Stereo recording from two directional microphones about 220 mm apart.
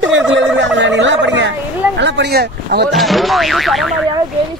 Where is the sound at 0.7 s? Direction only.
55° right (ahead or behind).